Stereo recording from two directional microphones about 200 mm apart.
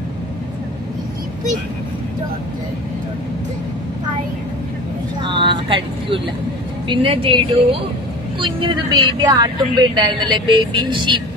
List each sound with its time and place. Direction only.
5.2 s a woman's voice: 25° right (ahead or behind)